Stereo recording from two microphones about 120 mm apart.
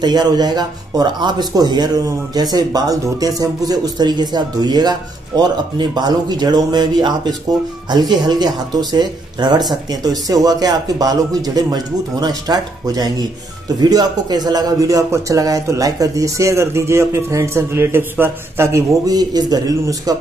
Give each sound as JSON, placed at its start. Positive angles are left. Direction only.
{"t": 0.0, "sound": "a man's voice", "side_deg": -35}